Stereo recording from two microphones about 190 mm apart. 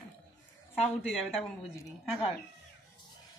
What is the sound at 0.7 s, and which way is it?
Speech, centre (ahead or behind).